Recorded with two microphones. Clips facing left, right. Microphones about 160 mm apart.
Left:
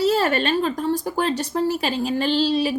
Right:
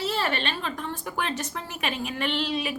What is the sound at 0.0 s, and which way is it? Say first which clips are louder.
Speech: left 8 dB; 40° left (ahead or behind).